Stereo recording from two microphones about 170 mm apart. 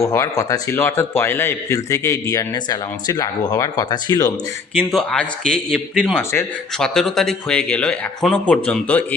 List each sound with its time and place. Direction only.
0.0 s a man's voice: 20° left (ahead or behind)
4.8 s speech: 5° left (ahead or behind)